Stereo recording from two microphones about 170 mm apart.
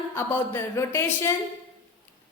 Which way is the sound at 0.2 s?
15° left (ahead or behind).